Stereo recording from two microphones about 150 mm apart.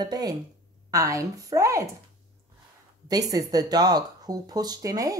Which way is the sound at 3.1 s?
25° right (ahead or behind).